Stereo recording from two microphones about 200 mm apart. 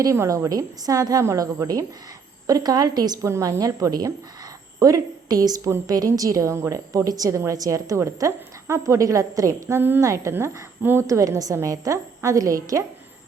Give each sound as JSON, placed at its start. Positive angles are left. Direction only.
{"t": 0.0, "sound": "a woman's voice", "side_deg": -15}